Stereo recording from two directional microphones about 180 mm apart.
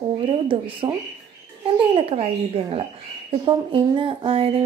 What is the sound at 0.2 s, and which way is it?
Speech, 30° right (ahead or behind).